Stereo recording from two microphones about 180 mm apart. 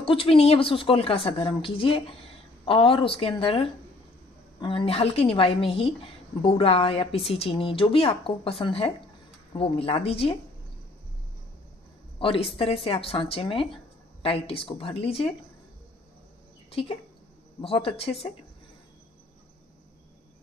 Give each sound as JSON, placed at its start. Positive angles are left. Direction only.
{"t": 0.0, "sound": "speech", "side_deg": 30}
{"t": 12.2, "sound": "speech", "side_deg": 30}
{"t": 16.7, "sound": "speech", "side_deg": 30}